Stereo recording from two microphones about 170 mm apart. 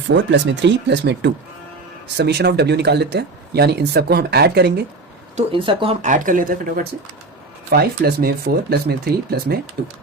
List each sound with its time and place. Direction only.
0.1 s speech: 90° right
2.1 s speech: 75° right (ahead or behind)
5.5 s speech: 30° right (ahead or behind)
6.0 s speech: 50° right (ahead or behind); by 9.6 s 65° right (ahead or behind)